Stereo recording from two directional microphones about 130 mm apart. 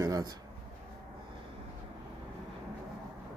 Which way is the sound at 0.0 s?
25° right (ahead or behind).